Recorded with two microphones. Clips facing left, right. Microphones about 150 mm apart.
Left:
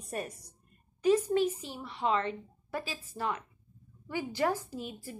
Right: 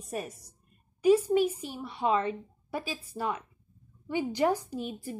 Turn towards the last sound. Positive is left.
turn(degrees=-20)  # may be behind; listen again after turning